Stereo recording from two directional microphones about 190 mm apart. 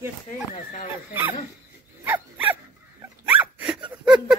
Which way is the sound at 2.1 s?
10° right (ahead or behind).